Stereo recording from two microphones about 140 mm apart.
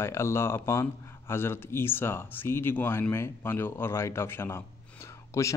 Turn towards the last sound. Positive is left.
turn(degrees=20)  # may be behind; listen again after turning